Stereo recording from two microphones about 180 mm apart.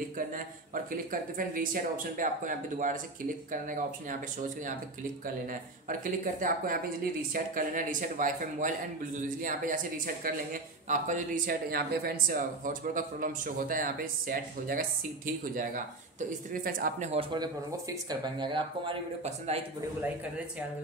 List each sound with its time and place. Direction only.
0.3 s speech: 50° right (ahead or behind)
5.2 s speech: 50° right (ahead or behind)
17.1 s speech: 30° right (ahead or behind)